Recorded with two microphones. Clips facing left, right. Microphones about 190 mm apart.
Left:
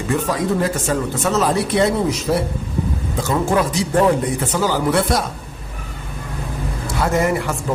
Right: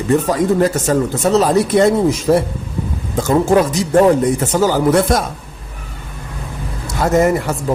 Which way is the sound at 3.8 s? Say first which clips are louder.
Right 5 dB; 40° right (ahead or behind).